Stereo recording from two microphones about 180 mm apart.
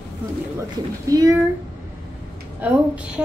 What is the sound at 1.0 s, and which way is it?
Speech, 20° right (ahead or behind).